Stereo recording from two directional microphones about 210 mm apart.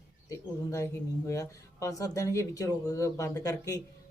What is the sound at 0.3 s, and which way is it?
Speech, 15° left (ahead or behind).